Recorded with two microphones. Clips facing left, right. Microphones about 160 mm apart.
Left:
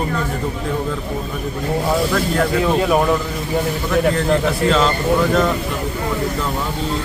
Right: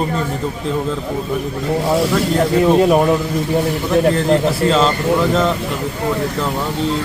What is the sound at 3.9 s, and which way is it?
Speech, 30° right (ahead or behind).